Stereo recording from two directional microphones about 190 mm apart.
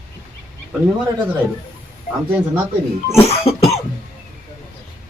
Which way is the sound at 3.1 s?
35° left (ahead or behind).